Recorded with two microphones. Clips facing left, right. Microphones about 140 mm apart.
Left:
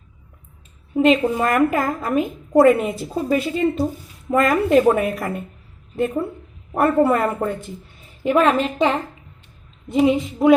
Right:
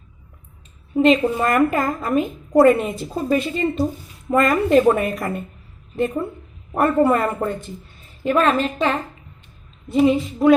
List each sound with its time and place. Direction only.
0.9 s a woman's voice: 5° left (ahead or behind)